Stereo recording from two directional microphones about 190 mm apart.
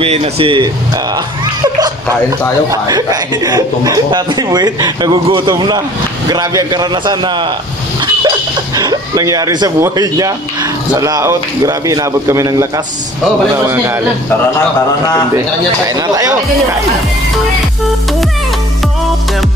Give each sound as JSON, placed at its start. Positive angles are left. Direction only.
{"t": 0.0, "sound": "a man's voice", "side_deg": -30}
{"t": 8.7, "sound": "speech", "side_deg": -20}
{"t": 15.9, "sound": "a man's voice", "side_deg": -20}